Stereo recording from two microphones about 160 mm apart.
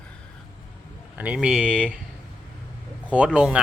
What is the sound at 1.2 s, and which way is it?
Speech, 5° right (ahead or behind).